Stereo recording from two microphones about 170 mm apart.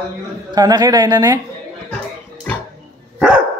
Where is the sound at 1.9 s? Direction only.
5° left (ahead or behind).